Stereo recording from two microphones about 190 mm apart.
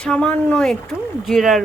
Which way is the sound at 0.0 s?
5° left (ahead or behind).